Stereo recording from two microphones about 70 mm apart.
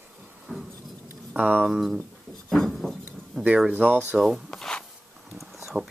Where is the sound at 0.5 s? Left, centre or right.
Centre.